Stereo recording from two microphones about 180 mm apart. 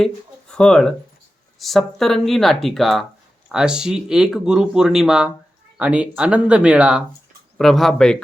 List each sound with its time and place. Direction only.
0.0 s speech: 5° left (ahead or behind)